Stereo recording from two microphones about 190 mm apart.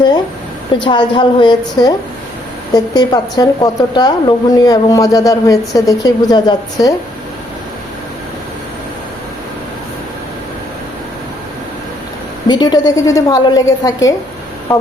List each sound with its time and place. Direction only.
0.8 s a woman's voice: 25° left (ahead or behind)
12.5 s a woman's voice: 20° left (ahead or behind)